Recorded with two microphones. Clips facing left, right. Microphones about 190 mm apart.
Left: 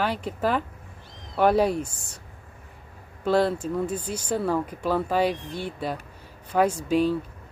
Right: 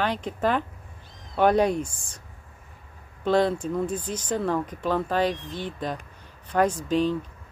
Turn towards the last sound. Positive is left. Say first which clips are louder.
# left 1 dB
turn(degrees=10)  # may be behind; listen again after turning